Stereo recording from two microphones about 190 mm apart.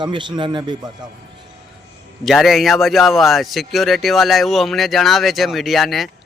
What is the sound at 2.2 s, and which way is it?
A man's voice, centre (ahead or behind).